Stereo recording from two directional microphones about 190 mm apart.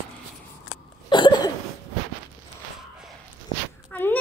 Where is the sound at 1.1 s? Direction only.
25° left (ahead or behind).